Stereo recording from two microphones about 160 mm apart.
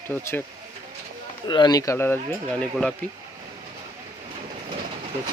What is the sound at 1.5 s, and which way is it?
Speech, 25° left (ahead or behind).